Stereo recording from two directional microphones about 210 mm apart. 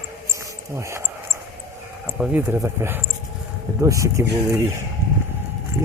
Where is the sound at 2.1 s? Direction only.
10° right (ahead or behind).